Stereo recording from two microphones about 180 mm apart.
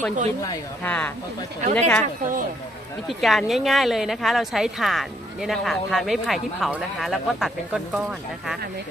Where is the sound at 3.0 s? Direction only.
Centre (ahead or behind).